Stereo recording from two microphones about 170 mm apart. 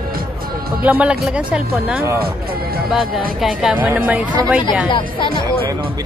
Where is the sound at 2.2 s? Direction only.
65° right (ahead or behind).